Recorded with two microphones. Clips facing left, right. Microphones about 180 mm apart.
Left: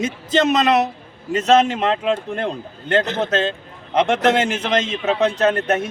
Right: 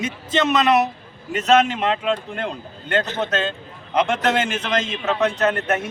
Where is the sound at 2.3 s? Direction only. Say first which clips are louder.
Left 4 dB; 40° left (ahead or behind).